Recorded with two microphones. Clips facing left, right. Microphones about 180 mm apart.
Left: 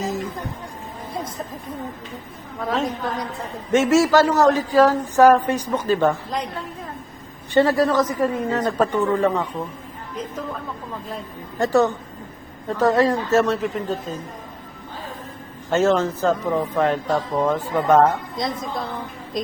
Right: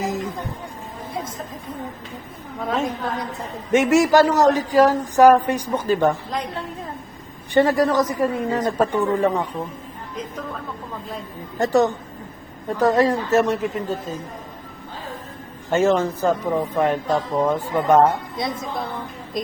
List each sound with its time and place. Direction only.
0.0 s a sound: 15° right (ahead or behind)
3.7 s a man's voice: 15° right (ahead or behind)
7.5 s a man's voice: 15° right (ahead or behind)
11.6 s a man's voice: 15° right (ahead or behind)
15.7 s a man's voice: 10° right (ahead or behind)